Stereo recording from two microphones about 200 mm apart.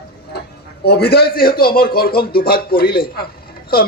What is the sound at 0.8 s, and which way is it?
A man's voice, 55° left (ahead or behind).